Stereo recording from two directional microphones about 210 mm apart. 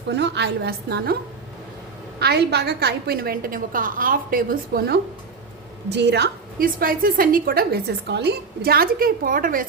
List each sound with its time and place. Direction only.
0.1 s a woman's voice: 55° right (ahead or behind)
2.1 s a woman's voice: 50° right (ahead or behind)